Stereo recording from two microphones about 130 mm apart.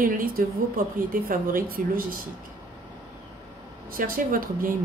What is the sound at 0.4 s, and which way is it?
Speech, 90° right.